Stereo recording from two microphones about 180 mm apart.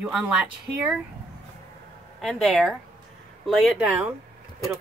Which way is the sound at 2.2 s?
Centre (ahead or behind).